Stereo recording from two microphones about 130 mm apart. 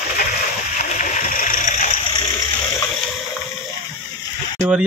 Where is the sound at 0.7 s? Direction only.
75° left (ahead or behind); by 1.9 s 90° left.